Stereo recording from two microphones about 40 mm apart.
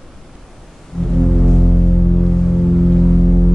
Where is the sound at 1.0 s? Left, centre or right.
Centre.